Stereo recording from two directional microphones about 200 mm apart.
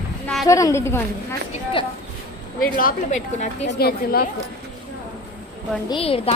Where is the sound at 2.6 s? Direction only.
45° left (ahead or behind).